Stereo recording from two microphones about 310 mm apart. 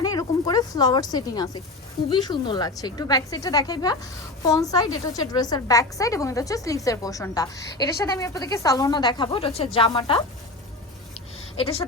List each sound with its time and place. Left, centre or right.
0.0 s a woman's voice: centre
11.5 s speech: centre